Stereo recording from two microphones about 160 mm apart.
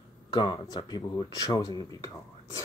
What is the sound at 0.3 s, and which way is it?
Speech, 25° left (ahead or behind).